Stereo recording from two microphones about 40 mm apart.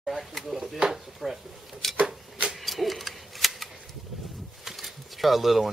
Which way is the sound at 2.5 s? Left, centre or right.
Centre.